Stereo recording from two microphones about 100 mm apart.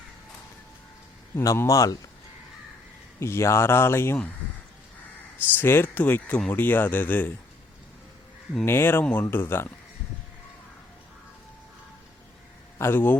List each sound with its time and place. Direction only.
1.4 s a man's voice: 30° left (ahead or behind)
3.2 s speech: 25° left (ahead or behind)
5.5 s speech: 25° left (ahead or behind)
8.6 s speech: 25° left (ahead or behind)
12.8 s speech: 20° left (ahead or behind)